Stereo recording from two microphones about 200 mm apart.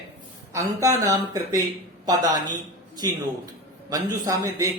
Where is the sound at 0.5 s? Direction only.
15° right (ahead or behind).